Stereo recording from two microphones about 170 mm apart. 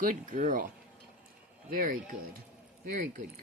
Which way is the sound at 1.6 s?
55° right (ahead or behind).